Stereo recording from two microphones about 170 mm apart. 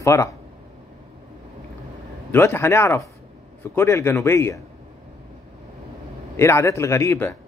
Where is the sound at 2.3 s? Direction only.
15° left (ahead or behind).